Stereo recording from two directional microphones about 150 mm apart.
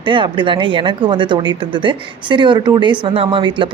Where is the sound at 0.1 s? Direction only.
35° right (ahead or behind).